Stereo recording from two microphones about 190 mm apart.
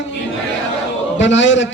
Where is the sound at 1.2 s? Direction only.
75° left (ahead or behind).